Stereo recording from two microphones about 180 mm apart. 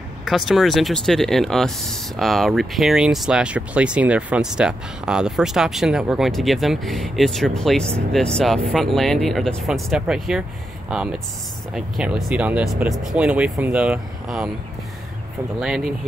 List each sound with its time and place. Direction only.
0.2 s speech: centre (ahead or behind)
15.6 s speech: 5° right (ahead or behind)